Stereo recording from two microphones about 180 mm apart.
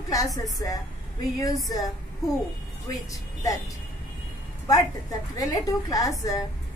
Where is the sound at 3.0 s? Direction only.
20° left (ahead or behind).